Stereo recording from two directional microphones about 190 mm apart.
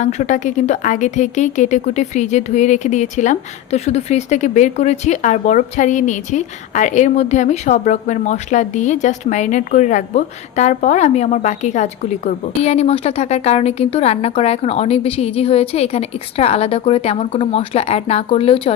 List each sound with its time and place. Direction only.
0.0 s a woman's voice: 40° left (ahead or behind)